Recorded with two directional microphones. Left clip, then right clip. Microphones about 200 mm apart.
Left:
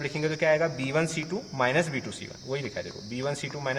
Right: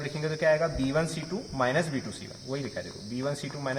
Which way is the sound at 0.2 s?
30° left (ahead or behind).